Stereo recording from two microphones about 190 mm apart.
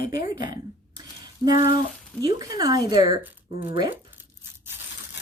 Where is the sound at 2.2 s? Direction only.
20° right (ahead or behind).